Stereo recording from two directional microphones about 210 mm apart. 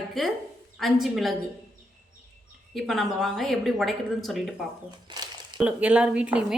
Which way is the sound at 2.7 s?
Centre (ahead or behind).